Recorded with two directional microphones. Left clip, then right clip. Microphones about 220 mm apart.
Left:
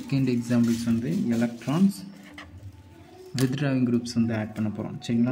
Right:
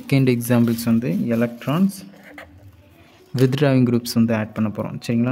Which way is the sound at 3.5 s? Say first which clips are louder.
Right 8 dB; 45° right (ahead or behind).